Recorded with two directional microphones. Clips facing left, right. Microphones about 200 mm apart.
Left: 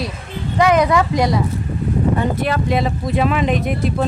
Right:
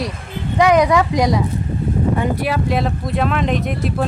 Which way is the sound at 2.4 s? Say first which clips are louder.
Left 1 dB; 5° right (ahead or behind).